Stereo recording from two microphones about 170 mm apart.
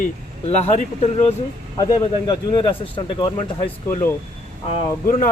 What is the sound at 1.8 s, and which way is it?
Speech, 25° left (ahead or behind).